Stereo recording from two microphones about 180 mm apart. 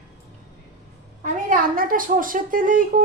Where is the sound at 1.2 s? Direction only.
50° right (ahead or behind).